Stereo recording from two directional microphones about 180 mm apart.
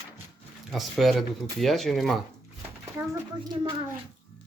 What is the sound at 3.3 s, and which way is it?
Speech, 25° right (ahead or behind).